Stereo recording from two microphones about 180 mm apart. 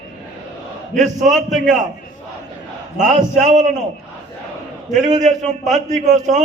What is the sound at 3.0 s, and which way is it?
Speech, 40° right (ahead or behind).